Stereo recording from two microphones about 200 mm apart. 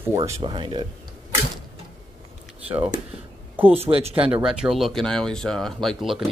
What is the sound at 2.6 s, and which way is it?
Speech, 10° right (ahead or behind).